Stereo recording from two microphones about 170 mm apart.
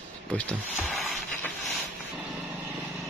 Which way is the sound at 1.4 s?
Centre (ahead or behind).